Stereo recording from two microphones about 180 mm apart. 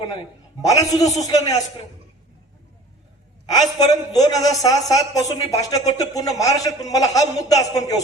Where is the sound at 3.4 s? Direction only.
20° left (ahead or behind).